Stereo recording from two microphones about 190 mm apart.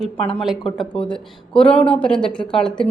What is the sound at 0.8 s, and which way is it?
A woman's voice, 5° left (ahead or behind).